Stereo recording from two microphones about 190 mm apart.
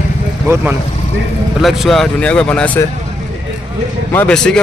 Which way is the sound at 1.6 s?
Centre (ahead or behind).